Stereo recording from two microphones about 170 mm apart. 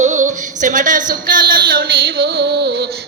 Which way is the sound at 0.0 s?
45° right (ahead or behind).